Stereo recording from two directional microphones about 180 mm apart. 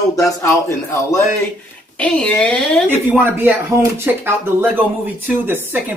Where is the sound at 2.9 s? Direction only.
10° right (ahead or behind).